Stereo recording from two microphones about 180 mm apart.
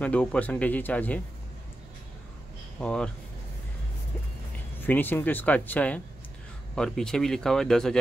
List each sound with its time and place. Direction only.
0.0 s speech: 5° left (ahead or behind)
2.8 s speech: 5° left (ahead or behind)
4.8 s speech: 10° left (ahead or behind)